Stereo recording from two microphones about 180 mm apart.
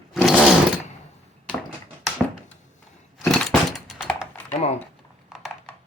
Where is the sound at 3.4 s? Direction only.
Centre (ahead or behind).